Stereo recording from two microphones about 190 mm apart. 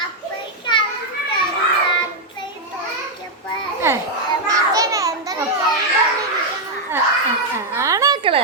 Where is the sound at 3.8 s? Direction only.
15° right (ahead or behind).